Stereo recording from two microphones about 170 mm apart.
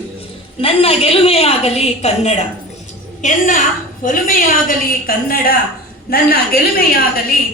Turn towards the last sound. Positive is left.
turn(degrees=60)  # may be behind; listen again after turning